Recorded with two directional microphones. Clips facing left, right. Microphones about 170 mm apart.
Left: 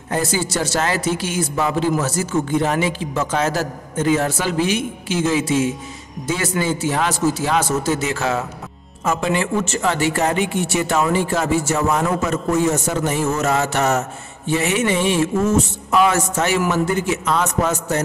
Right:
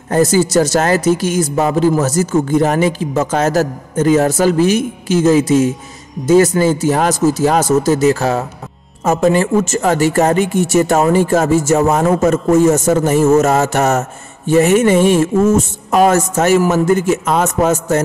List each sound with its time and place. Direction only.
0.1 s a man's voice: 40° right (ahead or behind)